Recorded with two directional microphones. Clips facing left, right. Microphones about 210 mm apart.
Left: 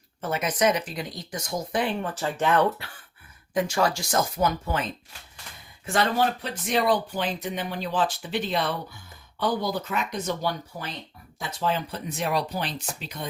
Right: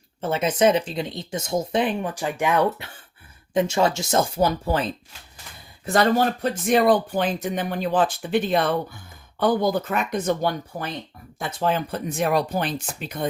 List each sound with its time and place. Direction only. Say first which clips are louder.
0.2 s speech: right 5 dB; 25° right (ahead or behind); by 2.8 s 10° right (ahead or behind)
3.5 s speech: right 4 dB; 25° right (ahead or behind); by 13.2 s 50° right (ahead or behind)